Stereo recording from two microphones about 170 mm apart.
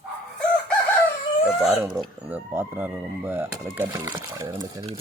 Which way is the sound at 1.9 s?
10° right (ahead or behind).